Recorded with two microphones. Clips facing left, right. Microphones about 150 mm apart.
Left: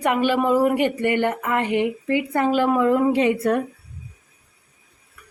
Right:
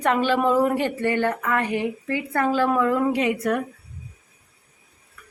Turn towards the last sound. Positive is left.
turn(degrees=30)  # may be behind; listen again after turning